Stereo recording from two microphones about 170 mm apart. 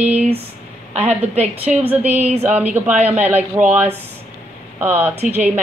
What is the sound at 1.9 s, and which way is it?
Speech, 10° right (ahead or behind).